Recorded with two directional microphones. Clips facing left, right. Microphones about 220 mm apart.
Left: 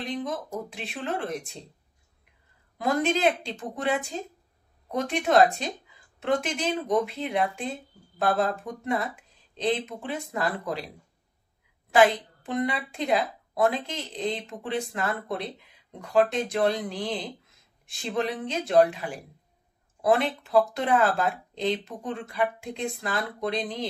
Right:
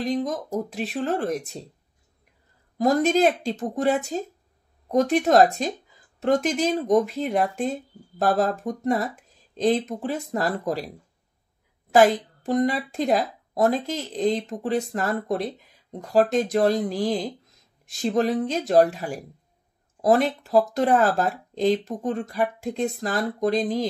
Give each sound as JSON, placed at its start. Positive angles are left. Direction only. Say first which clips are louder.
{"t": 0.0, "sound": "speech", "louder": "right 6 dB", "side_deg": -40}
{"t": 2.8, "sound": "speech", "louder": "right 5 dB", "side_deg": -40}
{"t": 11.9, "sound": "speech", "louder": "right 3 dB", "side_deg": -45}